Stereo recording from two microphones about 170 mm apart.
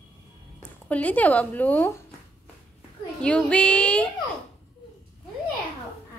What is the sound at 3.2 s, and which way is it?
Child singing, 5° left (ahead or behind).